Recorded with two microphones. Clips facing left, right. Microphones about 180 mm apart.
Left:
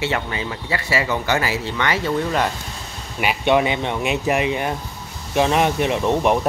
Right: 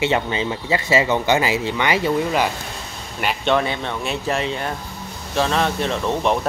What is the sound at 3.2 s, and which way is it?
Speech, 15° left (ahead or behind).